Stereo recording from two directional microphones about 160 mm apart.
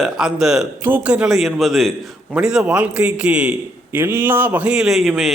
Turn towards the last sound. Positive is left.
turn(degrees=0)  # may be behind; listen again after turning